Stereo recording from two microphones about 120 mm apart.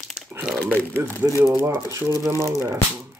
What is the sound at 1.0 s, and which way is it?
Speech, 20° right (ahead or behind).